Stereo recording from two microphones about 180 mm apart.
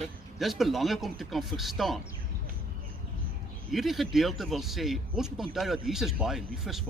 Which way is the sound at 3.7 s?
Centre (ahead or behind).